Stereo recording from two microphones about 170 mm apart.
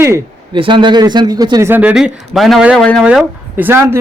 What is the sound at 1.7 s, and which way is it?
A man's voice, 10° right (ahead or behind).